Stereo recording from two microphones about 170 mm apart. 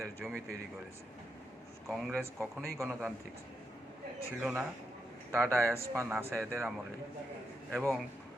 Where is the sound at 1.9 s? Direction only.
Centre (ahead or behind).